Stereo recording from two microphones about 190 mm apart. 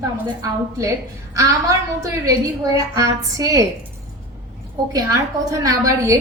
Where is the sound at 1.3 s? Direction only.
15° right (ahead or behind).